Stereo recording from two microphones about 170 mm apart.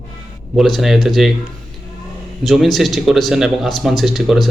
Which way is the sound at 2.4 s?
Centre (ahead or behind).